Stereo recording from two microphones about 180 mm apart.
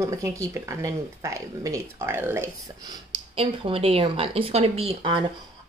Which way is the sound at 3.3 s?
30° right (ahead or behind).